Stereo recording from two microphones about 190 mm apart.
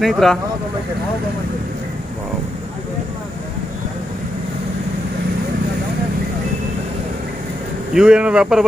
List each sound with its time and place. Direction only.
0.0 s speech: centre (ahead or behind)
7.9 s speech: 5° right (ahead or behind)